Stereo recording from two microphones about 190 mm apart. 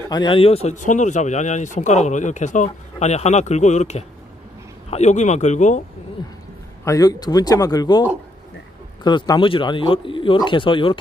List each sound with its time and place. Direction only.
0.1 s speech: 25° left (ahead or behind)
6.8 s speech: 15° left (ahead or behind)
9.0 s speech: 20° left (ahead or behind)